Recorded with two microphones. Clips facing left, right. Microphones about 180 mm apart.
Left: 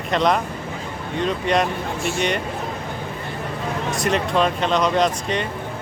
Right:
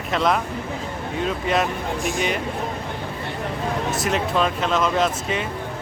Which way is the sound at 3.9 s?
Centre (ahead or behind).